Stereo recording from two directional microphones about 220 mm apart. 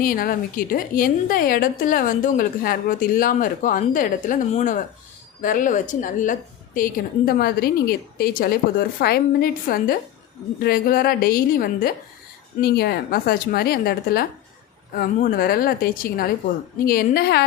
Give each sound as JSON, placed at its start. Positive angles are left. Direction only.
{"t": 0.0, "sound": "a woman's voice", "side_deg": 40}